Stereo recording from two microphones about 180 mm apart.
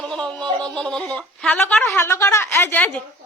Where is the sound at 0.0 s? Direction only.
5° left (ahead or behind).